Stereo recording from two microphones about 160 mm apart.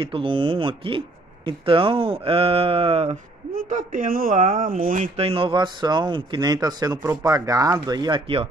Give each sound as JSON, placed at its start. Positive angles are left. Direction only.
{"t": 0.0, "sound": "speech", "side_deg": -35}
{"t": 3.5, "sound": "speech", "side_deg": -55}